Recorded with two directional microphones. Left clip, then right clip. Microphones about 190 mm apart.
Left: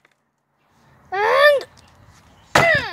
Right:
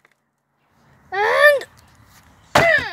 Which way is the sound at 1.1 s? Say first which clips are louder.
Even; 10° left (ahead or behind).